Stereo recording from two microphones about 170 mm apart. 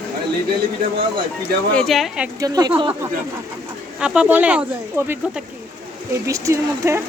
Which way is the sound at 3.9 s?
5° right (ahead or behind).